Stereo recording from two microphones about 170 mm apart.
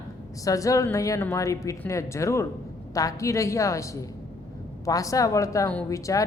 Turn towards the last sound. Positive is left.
turn(degrees=20)  # may be behind; listen again after turning